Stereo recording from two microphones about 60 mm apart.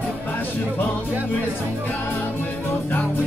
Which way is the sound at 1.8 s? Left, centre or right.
Left.